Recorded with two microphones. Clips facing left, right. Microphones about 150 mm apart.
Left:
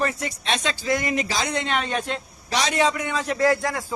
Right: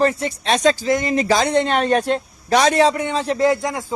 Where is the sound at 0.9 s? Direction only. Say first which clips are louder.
Right 5 dB; 25° right (ahead or behind).